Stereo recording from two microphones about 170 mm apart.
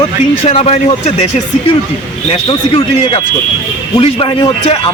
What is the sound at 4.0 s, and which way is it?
Speech, 35° left (ahead or behind).